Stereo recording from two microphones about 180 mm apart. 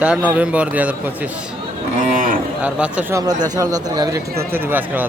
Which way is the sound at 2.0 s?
45° right (ahead or behind).